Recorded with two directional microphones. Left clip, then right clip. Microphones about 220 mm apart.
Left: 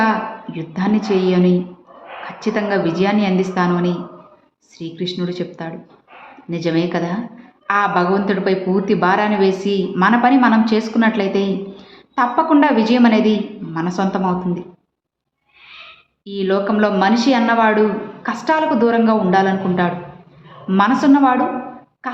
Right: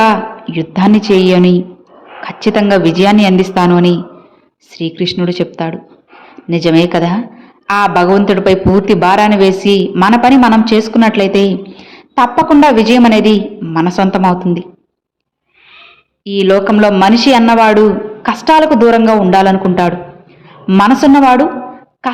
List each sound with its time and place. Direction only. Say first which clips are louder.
0.0 s a woman's voice: right 8 dB; 40° right (ahead or behind)
16.2 s a man's voice: right 9 dB; 35° right (ahead or behind)